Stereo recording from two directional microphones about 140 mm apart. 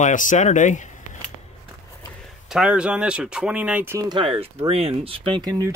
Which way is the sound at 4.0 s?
30° right (ahead or behind).